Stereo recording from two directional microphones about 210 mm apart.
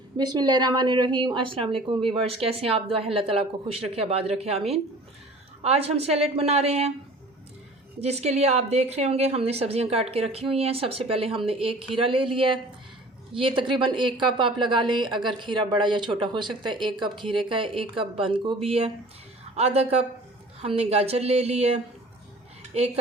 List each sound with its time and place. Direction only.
0.2 s speech: 20° right (ahead or behind)
8.0 s speech: 30° right (ahead or behind)